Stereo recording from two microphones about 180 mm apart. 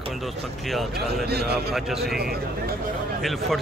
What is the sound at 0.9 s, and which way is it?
Speech, 65° right (ahead or behind).